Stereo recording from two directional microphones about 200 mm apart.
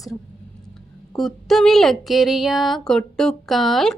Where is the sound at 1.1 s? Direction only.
Centre (ahead or behind).